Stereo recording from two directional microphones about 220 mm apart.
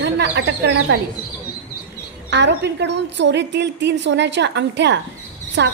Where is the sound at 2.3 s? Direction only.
50° right (ahead or behind).